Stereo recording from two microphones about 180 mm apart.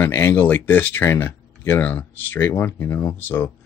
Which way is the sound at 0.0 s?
15° left (ahead or behind).